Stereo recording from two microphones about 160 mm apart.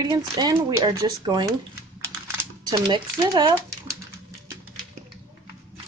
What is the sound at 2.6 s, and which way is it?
Speech, 30° right (ahead or behind).